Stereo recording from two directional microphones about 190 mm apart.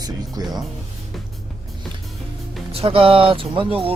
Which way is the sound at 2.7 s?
30° right (ahead or behind).